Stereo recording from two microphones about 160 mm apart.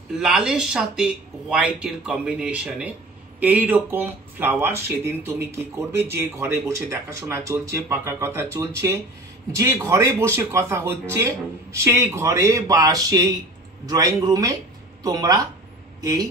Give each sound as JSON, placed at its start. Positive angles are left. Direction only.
{"t": 0.1, "sound": "a man's voice", "side_deg": -5}